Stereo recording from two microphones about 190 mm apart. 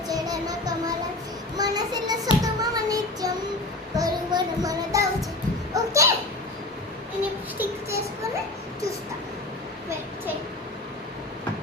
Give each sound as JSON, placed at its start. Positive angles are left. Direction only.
{"t": 0.1, "sound": "child singing", "side_deg": -20}
{"t": 5.7, "sound": "a sound", "side_deg": -15}
{"t": 7.6, "sound": "child singing", "side_deg": -15}